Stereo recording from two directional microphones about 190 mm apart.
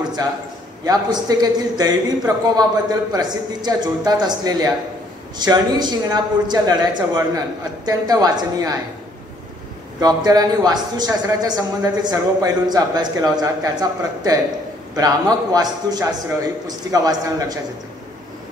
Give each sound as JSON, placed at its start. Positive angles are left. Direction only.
{"t": 0.8, "sound": "a man's voice", "side_deg": -20}
{"t": 9.9, "sound": "a man's voice", "side_deg": -20}